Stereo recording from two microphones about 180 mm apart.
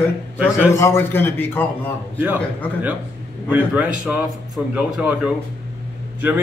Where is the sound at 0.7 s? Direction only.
15° left (ahead or behind).